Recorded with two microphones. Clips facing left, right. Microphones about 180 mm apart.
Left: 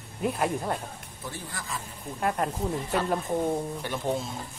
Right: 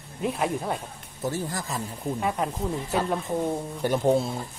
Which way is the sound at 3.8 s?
40° right (ahead or behind).